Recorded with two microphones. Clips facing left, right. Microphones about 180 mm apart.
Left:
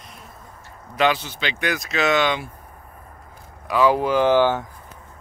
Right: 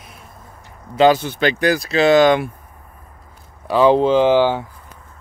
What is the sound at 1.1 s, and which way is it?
Speech, 50° right (ahead or behind).